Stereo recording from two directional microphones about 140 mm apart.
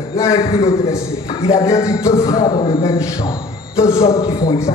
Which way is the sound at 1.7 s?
25° left (ahead or behind).